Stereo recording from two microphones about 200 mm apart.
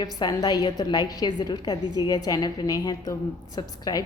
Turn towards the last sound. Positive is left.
turn(degrees=20)  # may be behind; listen again after turning